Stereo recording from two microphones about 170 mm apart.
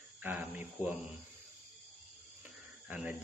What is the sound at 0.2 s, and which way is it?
Speech, 10° right (ahead or behind).